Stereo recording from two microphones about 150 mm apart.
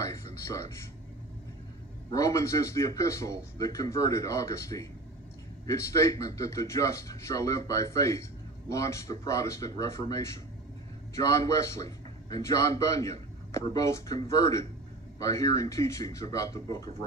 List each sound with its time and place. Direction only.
2.1 s a man's voice: 20° left (ahead or behind)